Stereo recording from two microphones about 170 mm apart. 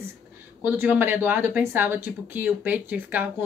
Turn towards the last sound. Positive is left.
turn(degrees=-10)  # may be behind; listen again after turning